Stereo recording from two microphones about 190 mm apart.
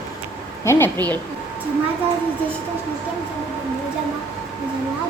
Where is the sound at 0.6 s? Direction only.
15° left (ahead or behind).